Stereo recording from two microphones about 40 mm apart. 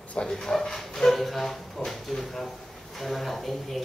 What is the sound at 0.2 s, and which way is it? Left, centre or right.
Speech, centre.